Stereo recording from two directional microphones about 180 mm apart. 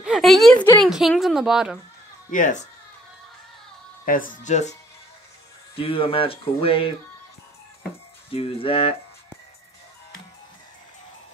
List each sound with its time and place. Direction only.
0.0 s a woman's voice: centre (ahead or behind)
2.3 s speech: 45° left (ahead or behind)
4.0 s speech: 50° left (ahead or behind)
5.8 s speech: 30° left (ahead or behind)
8.3 s speech: 30° left (ahead or behind)